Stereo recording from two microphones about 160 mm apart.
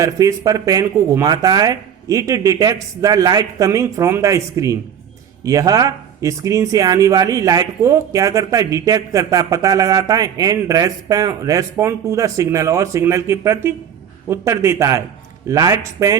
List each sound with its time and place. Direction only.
0.0 s a man's voice: 20° right (ahead or behind)